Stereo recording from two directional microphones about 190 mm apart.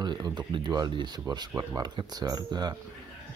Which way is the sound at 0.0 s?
20° right (ahead or behind).